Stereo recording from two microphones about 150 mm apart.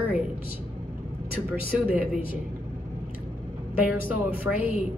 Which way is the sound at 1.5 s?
10° right (ahead or behind).